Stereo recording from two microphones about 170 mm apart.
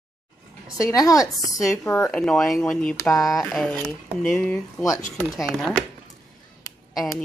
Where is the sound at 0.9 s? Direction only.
20° left (ahead or behind).